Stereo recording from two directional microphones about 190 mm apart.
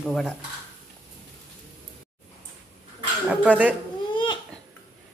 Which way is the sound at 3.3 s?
5° right (ahead or behind).